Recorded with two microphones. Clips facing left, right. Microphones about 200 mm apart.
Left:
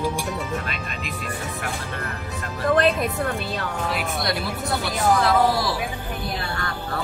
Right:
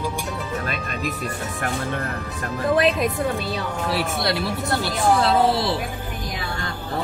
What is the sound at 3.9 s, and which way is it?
A woman's voice, 30° right (ahead or behind).